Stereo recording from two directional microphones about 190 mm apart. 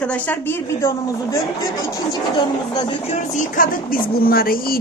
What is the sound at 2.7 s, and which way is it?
A woman's voice, 35° left (ahead or behind).